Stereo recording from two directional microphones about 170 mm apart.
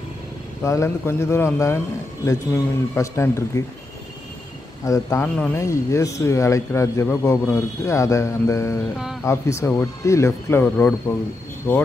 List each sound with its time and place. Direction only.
0.7 s speech: 15° left (ahead or behind)
4.8 s speech: 15° left (ahead or behind)